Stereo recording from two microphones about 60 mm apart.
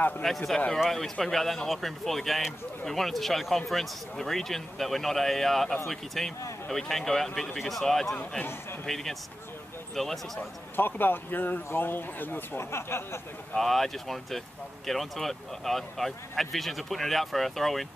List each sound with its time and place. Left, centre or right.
0.2 s a man's voice: centre
10.8 s speech: left
13.6 s speech: centre